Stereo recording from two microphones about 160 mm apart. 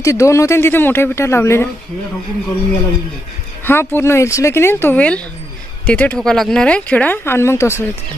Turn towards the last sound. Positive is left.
turn(degrees=15)  # may be behind; listen again after turning